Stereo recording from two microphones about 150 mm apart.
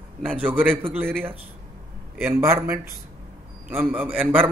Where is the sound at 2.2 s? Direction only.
15° right (ahead or behind).